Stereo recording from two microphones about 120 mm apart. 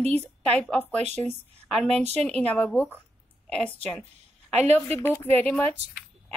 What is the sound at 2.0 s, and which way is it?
Speech, 65° right (ahead or behind).